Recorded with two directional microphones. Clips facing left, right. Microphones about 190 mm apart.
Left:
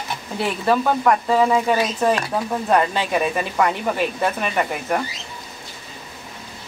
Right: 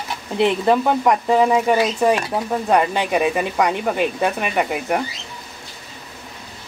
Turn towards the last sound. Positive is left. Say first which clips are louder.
# right 2 dB
turn(degrees=-15)  # may be behind; listen again after turning